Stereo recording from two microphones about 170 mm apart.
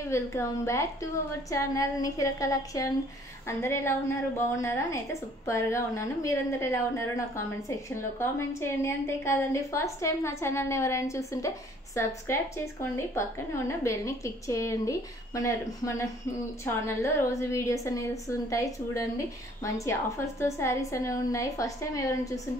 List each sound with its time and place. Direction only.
0.1 s a woman's voice: 15° left (ahead or behind)